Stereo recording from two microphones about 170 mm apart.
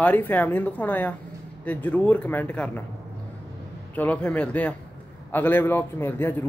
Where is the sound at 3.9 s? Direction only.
10° left (ahead or behind).